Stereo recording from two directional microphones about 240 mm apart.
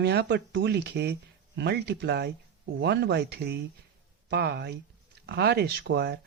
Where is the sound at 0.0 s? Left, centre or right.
Right.